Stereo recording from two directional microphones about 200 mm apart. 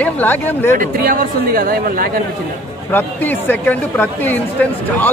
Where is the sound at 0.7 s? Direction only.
45° right (ahead or behind).